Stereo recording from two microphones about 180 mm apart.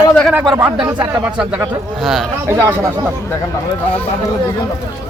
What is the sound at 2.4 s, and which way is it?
Speech, 15° right (ahead or behind).